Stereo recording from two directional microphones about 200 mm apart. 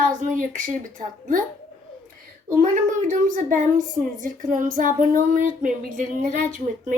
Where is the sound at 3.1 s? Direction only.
40° right (ahead or behind).